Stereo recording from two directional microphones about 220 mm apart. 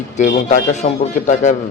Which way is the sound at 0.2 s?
35° left (ahead or behind).